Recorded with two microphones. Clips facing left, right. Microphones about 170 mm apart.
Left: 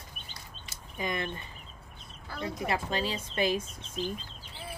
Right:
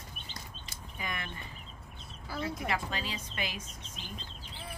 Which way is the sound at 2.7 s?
30° left (ahead or behind).